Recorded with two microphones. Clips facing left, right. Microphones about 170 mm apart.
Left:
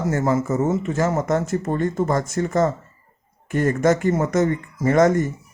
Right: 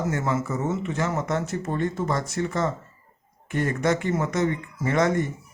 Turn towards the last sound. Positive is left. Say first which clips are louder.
# left 6 dB
turn(degrees=45)  # may be behind; listen again after turning